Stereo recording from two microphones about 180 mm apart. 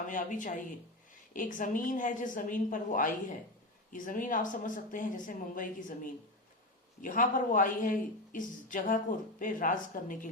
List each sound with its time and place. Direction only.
0.1 s speech: 45° left (ahead or behind)